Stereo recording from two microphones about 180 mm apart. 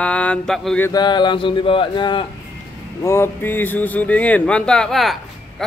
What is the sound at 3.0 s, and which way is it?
Speech, 15° left (ahead or behind).